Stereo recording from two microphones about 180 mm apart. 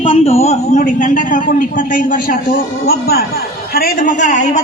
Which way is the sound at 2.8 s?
60° left (ahead or behind).